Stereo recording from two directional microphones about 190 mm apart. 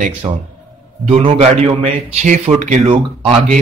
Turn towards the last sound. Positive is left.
turn(degrees=-30)  # may be behind; listen again after turning